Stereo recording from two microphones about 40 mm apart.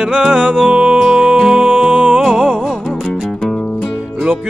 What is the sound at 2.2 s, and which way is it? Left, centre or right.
Music, centre.